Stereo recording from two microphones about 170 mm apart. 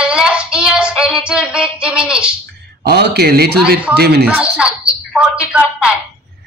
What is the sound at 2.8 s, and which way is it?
Speech, 70° right (ahead or behind).